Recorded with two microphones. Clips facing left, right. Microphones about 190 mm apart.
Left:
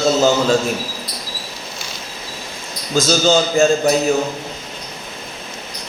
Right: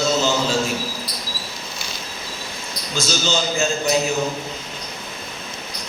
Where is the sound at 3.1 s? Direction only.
50° left (ahead or behind).